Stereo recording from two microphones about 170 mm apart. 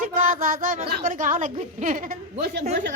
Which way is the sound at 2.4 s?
75° right (ahead or behind).